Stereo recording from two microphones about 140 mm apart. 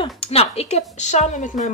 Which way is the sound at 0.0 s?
45° left (ahead or behind).